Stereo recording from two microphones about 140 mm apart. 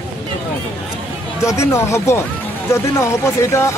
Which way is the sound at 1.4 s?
20° left (ahead or behind).